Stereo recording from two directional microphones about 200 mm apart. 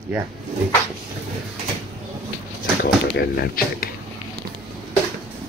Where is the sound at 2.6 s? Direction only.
50° left (ahead or behind).